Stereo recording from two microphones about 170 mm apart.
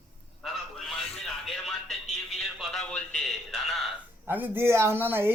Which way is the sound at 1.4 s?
Centre (ahead or behind).